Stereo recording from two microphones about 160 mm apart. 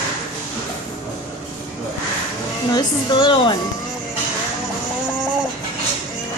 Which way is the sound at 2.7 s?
30° left (ahead or behind).